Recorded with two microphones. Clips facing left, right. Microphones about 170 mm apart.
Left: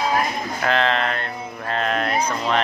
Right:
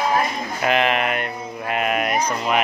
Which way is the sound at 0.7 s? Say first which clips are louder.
Right 1 dB; 15° right (ahead or behind).